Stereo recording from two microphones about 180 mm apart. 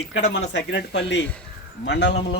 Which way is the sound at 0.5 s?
75° left (ahead or behind).